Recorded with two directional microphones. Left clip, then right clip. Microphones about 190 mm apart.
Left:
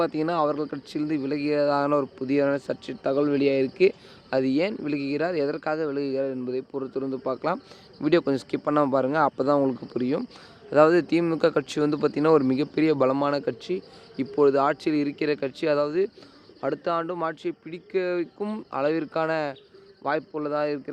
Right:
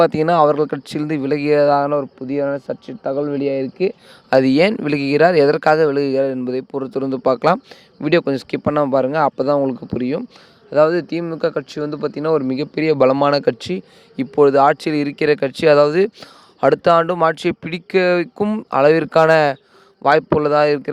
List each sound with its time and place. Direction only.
0.0 s speech: 45° right (ahead or behind)
1.9 s speech: 25° right (ahead or behind)
4.3 s speech: 55° right (ahead or behind)
8.0 s speech: 30° right (ahead or behind)
10.7 s speech: 15° right (ahead or behind); by 20.9 s 50° right (ahead or behind)